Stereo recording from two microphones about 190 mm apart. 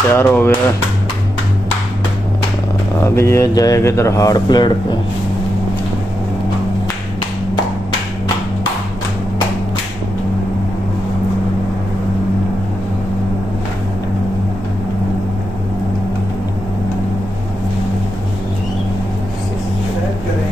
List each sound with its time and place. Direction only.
0.1 s speech: 10° left (ahead or behind)
3.0 s speech: 15° left (ahead or behind)